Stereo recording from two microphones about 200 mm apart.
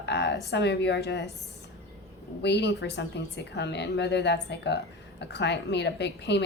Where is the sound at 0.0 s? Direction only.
60° left (ahead or behind).